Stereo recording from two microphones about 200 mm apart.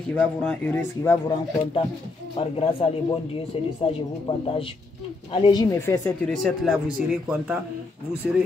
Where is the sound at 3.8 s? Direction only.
30° left (ahead or behind).